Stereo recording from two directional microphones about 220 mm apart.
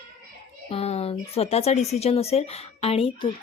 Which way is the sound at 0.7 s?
25° left (ahead or behind).